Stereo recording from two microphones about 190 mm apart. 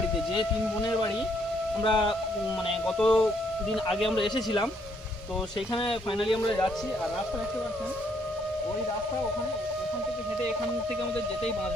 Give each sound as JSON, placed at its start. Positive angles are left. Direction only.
{"t": 1.8, "sound": "speech", "side_deg": 25}
{"t": 3.0, "sound": "speech", "side_deg": 5}
{"t": 5.8, "sound": "speech", "side_deg": 30}